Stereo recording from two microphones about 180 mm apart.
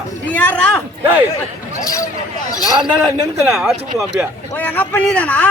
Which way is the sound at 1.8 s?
20° left (ahead or behind).